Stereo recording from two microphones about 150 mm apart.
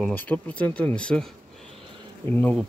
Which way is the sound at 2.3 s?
10° left (ahead or behind).